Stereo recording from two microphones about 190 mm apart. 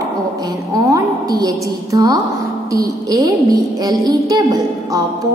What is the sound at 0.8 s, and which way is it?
A woman's voice, 20° right (ahead or behind).